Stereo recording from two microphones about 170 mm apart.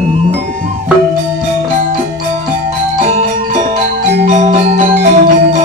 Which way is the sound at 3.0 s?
45° right (ahead or behind).